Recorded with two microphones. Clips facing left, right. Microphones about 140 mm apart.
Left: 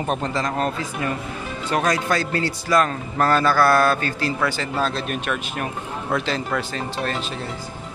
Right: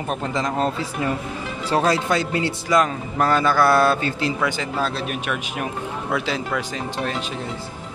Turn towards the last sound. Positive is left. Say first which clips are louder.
# even
turn(degrees=-15)  # may be behind; listen again after turning